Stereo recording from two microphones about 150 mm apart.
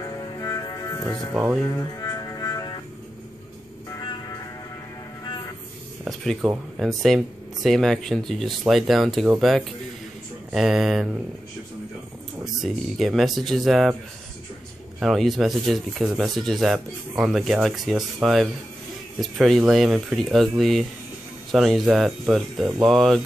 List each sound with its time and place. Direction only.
0.0 s music: 25° left (ahead or behind)
3.9 s music: 25° left (ahead or behind)
6.0 s speech: centre (ahead or behind)
10.5 s speech: centre (ahead or behind)
12.6 s speech: centre (ahead or behind)
15.0 s speech: centre (ahead or behind)